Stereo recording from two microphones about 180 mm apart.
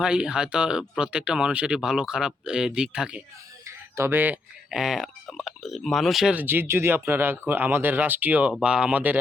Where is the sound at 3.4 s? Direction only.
15° right (ahead or behind).